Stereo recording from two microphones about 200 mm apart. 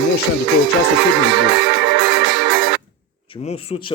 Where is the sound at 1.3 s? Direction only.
60° right (ahead or behind).